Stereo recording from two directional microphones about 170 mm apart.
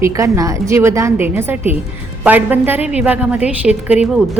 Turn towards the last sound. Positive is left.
turn(degrees=-5)  # may be behind; listen again after turning